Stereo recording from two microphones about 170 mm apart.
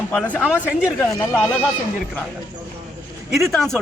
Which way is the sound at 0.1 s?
10° left (ahead or behind).